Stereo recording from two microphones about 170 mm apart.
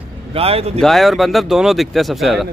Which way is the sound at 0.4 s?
35° right (ahead or behind).